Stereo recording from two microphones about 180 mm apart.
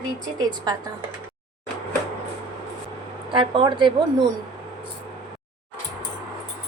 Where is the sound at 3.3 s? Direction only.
25° right (ahead or behind).